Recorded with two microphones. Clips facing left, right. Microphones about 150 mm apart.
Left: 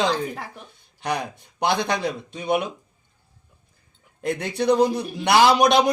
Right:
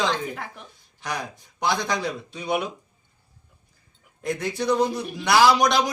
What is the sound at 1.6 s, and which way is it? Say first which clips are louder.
Speech: left 3 dB; 60° left (ahead or behind).